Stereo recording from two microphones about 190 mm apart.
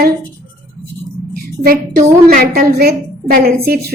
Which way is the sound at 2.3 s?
50° right (ahead or behind).